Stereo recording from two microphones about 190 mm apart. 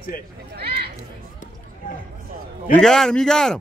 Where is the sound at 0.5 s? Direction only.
55° right (ahead or behind).